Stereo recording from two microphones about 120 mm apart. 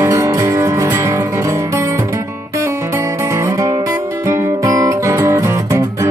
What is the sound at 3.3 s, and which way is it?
Music, 25° right (ahead or behind).